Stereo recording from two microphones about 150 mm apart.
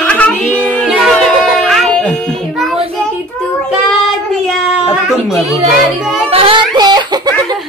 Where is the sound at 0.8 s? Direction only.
Centre (ahead or behind).